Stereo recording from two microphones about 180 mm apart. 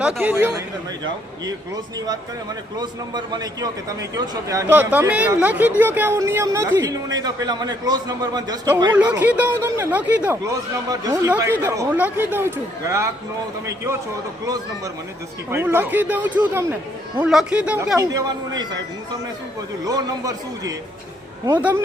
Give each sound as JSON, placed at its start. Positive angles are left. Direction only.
{"t": 0.0, "sound": "speech", "side_deg": -5}
{"t": 9.0, "sound": "speech", "side_deg": -10}
{"t": 10.8, "sound": "speech", "side_deg": -20}
{"t": 15.4, "sound": "speech", "side_deg": -10}
{"t": 18.0, "sound": "speech", "side_deg": -20}
{"t": 19.8, "sound": "speech", "side_deg": -20}
{"t": 21.6, "sound": "speech", "side_deg": -10}